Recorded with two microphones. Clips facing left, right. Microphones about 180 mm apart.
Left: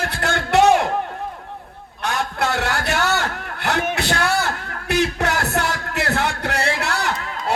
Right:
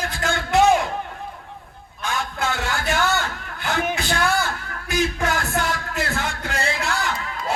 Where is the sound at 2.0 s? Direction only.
65° left (ahead or behind).